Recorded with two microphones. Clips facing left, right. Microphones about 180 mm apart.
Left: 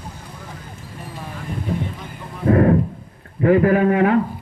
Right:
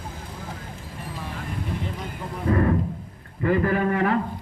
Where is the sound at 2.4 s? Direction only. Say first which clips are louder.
Left 7 dB; 45° left (ahead or behind).